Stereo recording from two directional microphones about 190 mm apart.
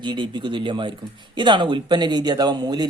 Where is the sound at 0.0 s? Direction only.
25° right (ahead or behind).